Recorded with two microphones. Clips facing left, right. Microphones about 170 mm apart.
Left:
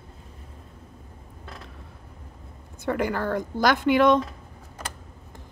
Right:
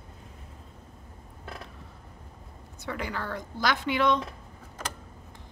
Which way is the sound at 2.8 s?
50° left (ahead or behind).